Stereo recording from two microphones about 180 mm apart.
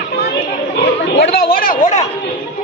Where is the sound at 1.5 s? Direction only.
50° left (ahead or behind).